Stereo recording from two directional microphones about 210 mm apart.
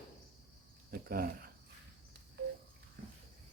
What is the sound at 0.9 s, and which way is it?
Speech, 45° right (ahead or behind).